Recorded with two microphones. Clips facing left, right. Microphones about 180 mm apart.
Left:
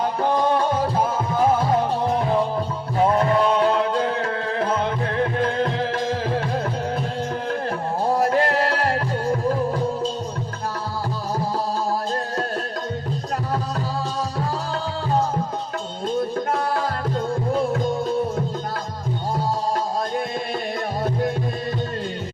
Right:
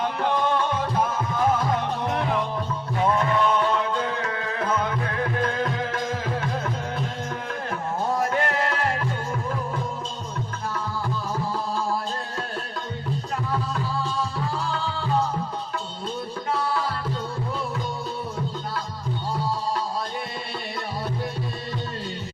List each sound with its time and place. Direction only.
0.3 s music: 35° left (ahead or behind)
8.0 s music: 35° left (ahead or behind)
14.3 s music: 40° left (ahead or behind)
16.5 s music: 45° left (ahead or behind)
19.4 s music: 45° left (ahead or behind)